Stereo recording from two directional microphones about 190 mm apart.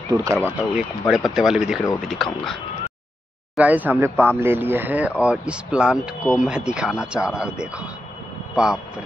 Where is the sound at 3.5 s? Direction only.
10° right (ahead or behind).